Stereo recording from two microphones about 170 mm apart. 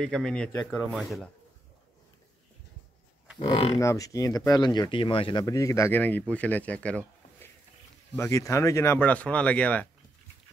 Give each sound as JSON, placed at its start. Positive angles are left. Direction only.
{"t": 0.0, "sound": "speech", "side_deg": 5}
{"t": 3.4, "sound": "speech", "side_deg": 35}
{"t": 3.8, "sound": "speech", "side_deg": 20}
{"t": 8.2, "sound": "speech", "side_deg": 20}